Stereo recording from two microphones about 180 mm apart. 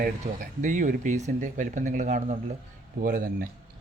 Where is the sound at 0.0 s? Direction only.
50° right (ahead or behind).